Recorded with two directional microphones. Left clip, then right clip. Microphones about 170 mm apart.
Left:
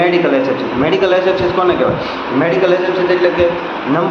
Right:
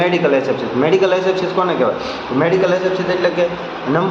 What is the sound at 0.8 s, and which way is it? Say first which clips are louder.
Speech: left 1 dB; 20° right (ahead or behind).